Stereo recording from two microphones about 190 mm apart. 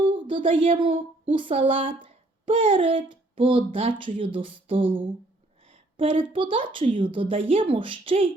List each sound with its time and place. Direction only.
0.0 s speech: 25° right (ahead or behind)